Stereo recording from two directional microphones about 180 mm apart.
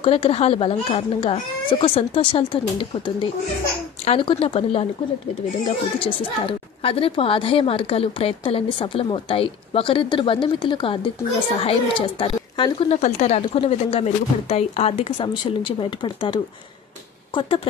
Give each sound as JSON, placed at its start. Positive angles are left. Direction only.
{"t": 0.0, "sound": "speech", "side_deg": 30}
{"t": 5.9, "sound": "a woman's voice", "side_deg": 30}
{"t": 12.9, "sound": "speech", "side_deg": 40}